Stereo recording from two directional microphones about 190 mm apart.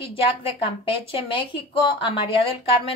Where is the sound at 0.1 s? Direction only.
30° left (ahead or behind).